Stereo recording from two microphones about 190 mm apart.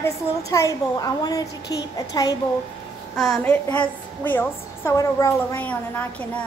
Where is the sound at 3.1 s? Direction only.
5° left (ahead or behind).